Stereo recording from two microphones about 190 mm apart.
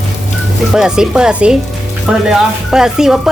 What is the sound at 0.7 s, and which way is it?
Music, 5° right (ahead or behind).